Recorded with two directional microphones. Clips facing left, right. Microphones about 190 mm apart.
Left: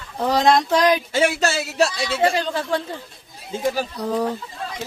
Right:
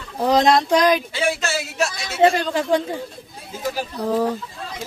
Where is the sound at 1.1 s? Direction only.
35° left (ahead or behind).